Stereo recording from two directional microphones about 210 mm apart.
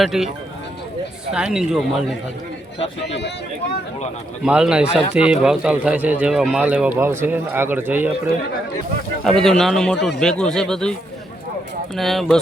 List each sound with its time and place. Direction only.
0.0 s a man's voice: centre (ahead or behind)
1.5 s a man's voice: 5° right (ahead or behind)
2.7 s speech: 25° left (ahead or behind)
4.4 s a man's voice: 5° right (ahead or behind)
9.2 s a man's voice: 5° left (ahead or behind)
11.9 s a man's voice: centre (ahead or behind)